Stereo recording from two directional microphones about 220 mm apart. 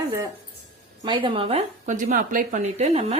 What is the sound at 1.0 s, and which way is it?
Speech, 20° right (ahead or behind).